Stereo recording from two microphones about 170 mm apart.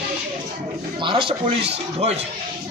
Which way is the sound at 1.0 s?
30° right (ahead or behind).